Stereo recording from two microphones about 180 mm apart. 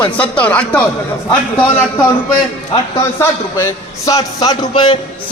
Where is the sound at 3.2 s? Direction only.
15° left (ahead or behind).